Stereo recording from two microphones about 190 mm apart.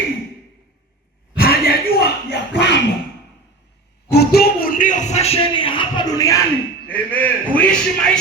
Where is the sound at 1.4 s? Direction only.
50° left (ahead or behind).